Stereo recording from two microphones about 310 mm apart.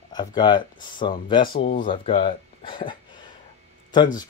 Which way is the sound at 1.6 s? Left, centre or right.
Left.